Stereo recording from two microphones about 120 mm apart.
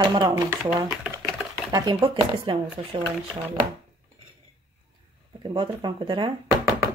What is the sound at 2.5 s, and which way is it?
Speech, 45° right (ahead or behind).